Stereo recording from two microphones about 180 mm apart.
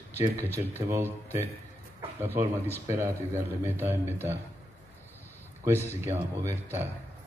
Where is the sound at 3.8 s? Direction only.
10° right (ahead or behind).